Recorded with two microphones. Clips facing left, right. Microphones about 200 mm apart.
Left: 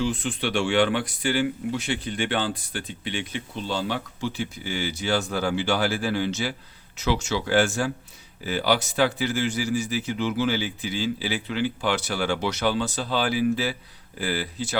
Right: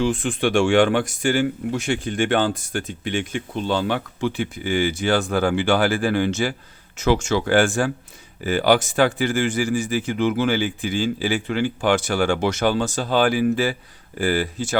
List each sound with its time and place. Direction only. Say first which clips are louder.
0.0 s speech: right 5 dB; 50° right (ahead or behind)